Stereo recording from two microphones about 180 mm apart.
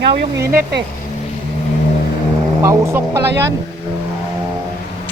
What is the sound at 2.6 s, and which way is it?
Speech, 15° right (ahead or behind).